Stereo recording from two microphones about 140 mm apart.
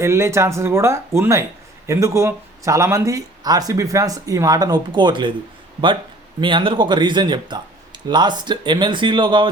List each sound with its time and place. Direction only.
0.0 s speech: 20° right (ahead or behind)
6.4 s speech: 35° right (ahead or behind)